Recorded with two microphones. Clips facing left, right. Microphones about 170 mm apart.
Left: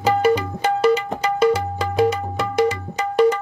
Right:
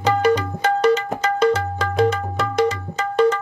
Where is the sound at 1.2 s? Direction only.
10° left (ahead or behind).